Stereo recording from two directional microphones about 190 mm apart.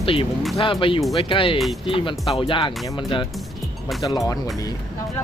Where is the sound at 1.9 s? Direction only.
25° left (ahead or behind).